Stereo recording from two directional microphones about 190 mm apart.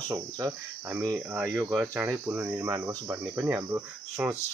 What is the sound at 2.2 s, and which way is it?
Speech, 15° right (ahead or behind).